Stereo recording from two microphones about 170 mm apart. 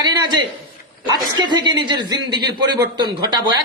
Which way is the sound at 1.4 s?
25° right (ahead or behind).